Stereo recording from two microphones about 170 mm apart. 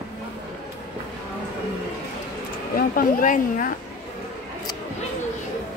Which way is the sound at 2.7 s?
55° left (ahead or behind).